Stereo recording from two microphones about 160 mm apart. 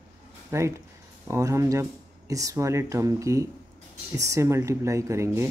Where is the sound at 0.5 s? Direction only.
15° right (ahead or behind).